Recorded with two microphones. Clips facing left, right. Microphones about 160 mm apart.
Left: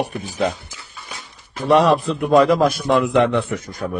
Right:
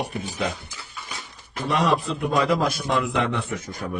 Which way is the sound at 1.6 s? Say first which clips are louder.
Left 8 dB; 40° left (ahead or behind).